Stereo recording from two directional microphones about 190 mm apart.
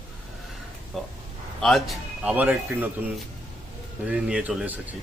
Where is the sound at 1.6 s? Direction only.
Centre (ahead or behind).